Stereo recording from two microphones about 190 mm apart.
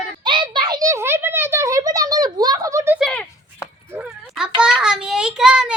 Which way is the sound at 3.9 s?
5° right (ahead or behind).